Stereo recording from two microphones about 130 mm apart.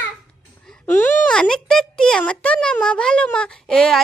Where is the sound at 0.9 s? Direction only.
15° left (ahead or behind).